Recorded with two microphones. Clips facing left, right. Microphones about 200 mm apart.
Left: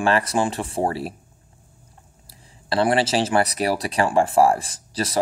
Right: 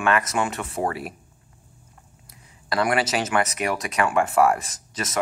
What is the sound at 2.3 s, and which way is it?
Speech, 30° left (ahead or behind).